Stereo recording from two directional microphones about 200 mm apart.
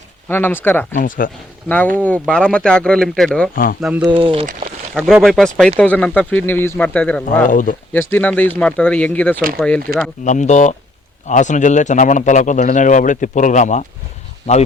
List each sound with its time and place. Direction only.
0.3 s speech: 10° left (ahead or behind)
0.9 s speech: 45° left (ahead or behind)
1.6 s speech: 5° left (ahead or behind)
3.5 s speech: 45° left (ahead or behind)
3.8 s speech: 5° right (ahead or behind)
4.2 s speech: 25° right (ahead or behind)
5.0 s speech: centre (ahead or behind)
7.4 s a man's voice: 40° left (ahead or behind)
7.9 s speech: 10° left (ahead or behind)
10.2 s a man's voice: 35° left (ahead or behind)